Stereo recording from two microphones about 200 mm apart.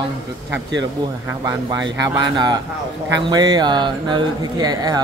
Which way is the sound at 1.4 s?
20° right (ahead or behind).